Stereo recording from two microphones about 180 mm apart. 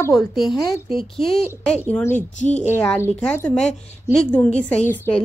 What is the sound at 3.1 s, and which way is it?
A woman's voice, 5° left (ahead or behind).